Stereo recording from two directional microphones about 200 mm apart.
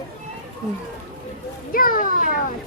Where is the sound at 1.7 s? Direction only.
45° left (ahead or behind).